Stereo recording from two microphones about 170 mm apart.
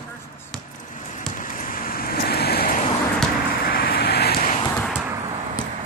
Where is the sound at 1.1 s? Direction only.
50° left (ahead or behind).